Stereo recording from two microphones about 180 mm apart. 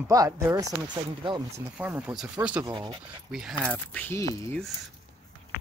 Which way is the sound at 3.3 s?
5° right (ahead or behind).